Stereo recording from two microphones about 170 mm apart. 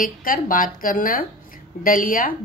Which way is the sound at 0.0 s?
55° left (ahead or behind).